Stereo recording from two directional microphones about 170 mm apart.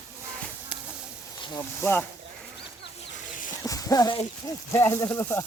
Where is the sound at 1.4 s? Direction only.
25° left (ahead or behind).